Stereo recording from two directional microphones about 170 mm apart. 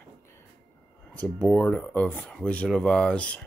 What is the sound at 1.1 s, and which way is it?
Speech, 5° left (ahead or behind).